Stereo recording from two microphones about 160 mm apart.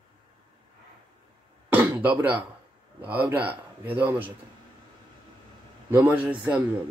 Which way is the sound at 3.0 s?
10° right (ahead or behind).